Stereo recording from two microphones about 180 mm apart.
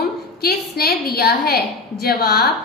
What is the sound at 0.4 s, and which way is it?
A woman's voice, 60° left (ahead or behind).